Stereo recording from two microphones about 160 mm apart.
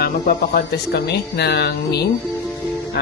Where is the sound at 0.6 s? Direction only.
90° left.